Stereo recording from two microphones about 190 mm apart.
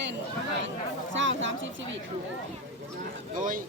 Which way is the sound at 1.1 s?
80° right.